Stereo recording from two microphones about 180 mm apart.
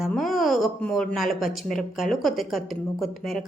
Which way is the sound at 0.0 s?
Centre (ahead or behind).